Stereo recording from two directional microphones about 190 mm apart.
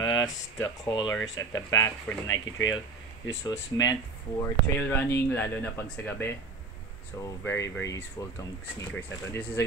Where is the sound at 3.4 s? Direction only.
20° left (ahead or behind).